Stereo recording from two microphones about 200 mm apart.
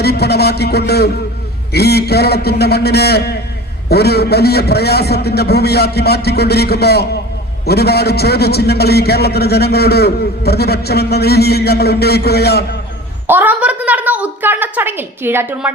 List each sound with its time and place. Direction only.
0.0 s a man's voice: 55° left (ahead or behind)
13.2 s a woman's voice: 10° right (ahead or behind)